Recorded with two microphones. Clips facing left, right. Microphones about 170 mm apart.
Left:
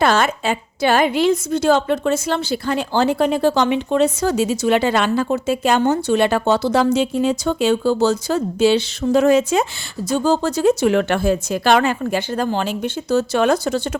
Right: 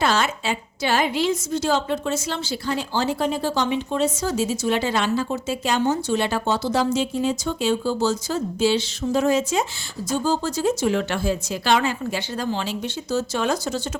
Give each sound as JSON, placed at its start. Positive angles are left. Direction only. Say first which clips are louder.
{"t": 0.0, "sound": "a woman's voice", "louder": "left 5 dB", "side_deg": 55}